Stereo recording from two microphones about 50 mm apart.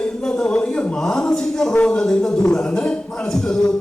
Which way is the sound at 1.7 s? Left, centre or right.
Left.